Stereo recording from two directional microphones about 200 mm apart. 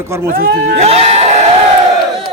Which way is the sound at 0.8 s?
30° right (ahead or behind).